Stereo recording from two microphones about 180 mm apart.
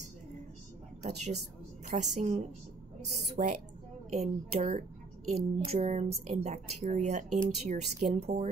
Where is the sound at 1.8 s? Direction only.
40° right (ahead or behind).